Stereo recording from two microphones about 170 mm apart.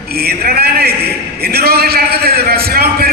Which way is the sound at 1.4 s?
65° right (ahead or behind).